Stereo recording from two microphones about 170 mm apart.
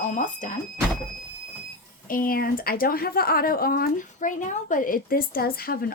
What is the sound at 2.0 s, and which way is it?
Speech, 55° left (ahead or behind).